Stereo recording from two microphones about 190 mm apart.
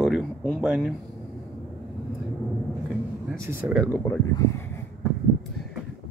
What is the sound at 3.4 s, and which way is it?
Speech, 10° right (ahead or behind).